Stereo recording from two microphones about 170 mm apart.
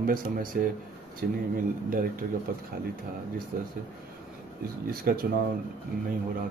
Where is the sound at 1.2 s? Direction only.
65° right (ahead or behind).